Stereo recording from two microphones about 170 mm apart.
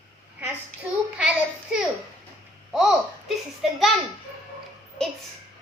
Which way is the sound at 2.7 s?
5° right (ahead or behind).